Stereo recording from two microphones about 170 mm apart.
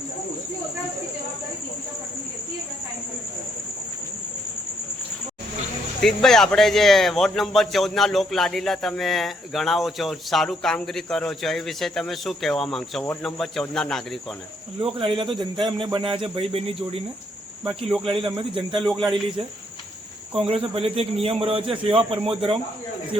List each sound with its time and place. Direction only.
6.0 s a man's voice: centre (ahead or behind)
14.8 s a man's voice: 30° right (ahead or behind)
17.8 s a man's voice: centre (ahead or behind)
18.3 s a man's voice: 30° right (ahead or behind)
20.3 s a man's voice: 35° right (ahead or behind)